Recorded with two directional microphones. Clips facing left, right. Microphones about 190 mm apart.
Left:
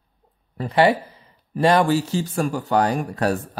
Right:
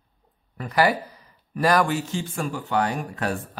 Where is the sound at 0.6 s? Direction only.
25° left (ahead or behind).